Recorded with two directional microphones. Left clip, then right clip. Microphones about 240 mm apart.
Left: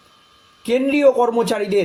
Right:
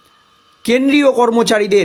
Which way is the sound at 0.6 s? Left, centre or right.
Right.